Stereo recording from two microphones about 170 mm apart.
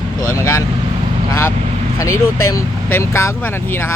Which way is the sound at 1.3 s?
15° left (ahead or behind).